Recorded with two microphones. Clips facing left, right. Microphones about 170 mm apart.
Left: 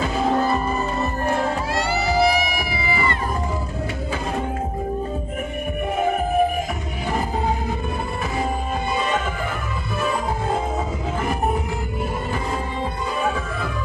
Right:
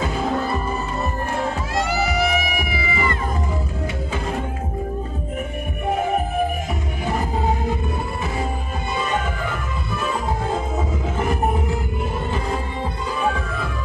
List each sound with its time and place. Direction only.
1.8 s music: 30° left (ahead or behind)